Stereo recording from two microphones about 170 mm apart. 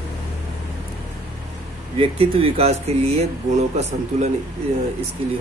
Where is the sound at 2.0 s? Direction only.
35° right (ahead or behind).